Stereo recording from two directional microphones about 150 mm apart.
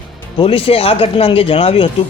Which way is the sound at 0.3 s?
40° left (ahead or behind).